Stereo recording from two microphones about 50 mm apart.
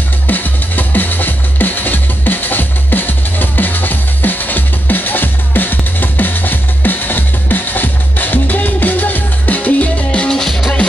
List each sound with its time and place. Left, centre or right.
0.3 s music: left